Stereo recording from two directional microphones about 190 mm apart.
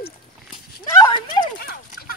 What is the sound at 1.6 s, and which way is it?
Horse, 55° left (ahead or behind).